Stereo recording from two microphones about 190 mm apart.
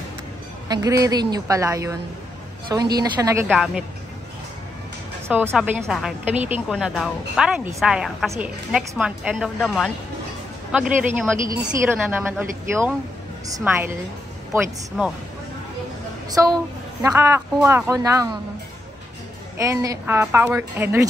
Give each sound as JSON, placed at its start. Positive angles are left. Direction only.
{"t": 0.7, "sound": "a woman's voice", "side_deg": -20}
{"t": 3.4, "sound": "a woman's voice", "side_deg": 0}
{"t": 5.5, "sound": "a woman's voice", "side_deg": -5}
{"t": 6.7, "sound": "a woman's voice", "side_deg": 0}
{"t": 17.0, "sound": "a woman's voice", "side_deg": -15}
{"t": 19.6, "sound": "a woman's voice", "side_deg": -15}